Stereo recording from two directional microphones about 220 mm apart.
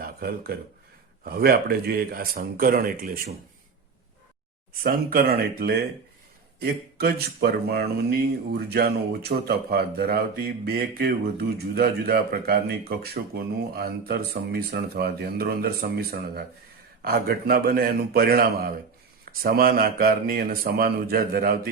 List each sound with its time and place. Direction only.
0.0 s a sound: 45° right (ahead or behind)
1.2 s speech: 45° right (ahead or behind)
4.8 s speech: 40° right (ahead or behind)